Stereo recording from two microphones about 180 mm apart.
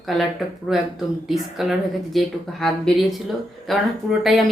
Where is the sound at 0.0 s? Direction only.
Centre (ahead or behind).